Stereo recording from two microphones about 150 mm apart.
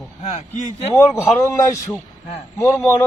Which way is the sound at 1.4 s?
20° left (ahead or behind).